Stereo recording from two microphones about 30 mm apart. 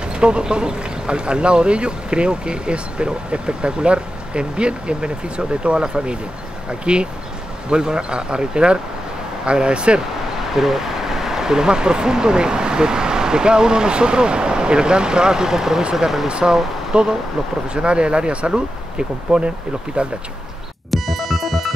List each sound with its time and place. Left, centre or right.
0.1 s speech: right
10.5 s speech: centre
16.9 s speech: right
19.3 s speech: right
20.0 s speech: right
20.9 s music: centre